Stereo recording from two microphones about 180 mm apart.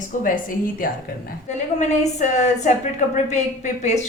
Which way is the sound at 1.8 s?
40° left (ahead or behind).